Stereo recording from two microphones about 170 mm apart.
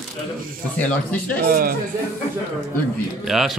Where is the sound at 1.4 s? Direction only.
60° right (ahead or behind).